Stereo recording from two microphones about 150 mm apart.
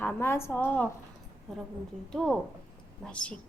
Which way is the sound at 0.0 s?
15° left (ahead or behind).